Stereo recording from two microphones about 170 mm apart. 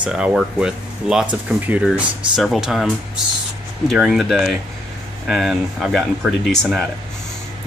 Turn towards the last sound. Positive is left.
turn(degrees=0)  # may be behind; listen again after turning